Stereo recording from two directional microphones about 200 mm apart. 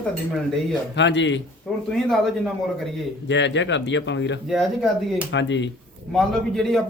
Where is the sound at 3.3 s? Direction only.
65° left (ahead or behind).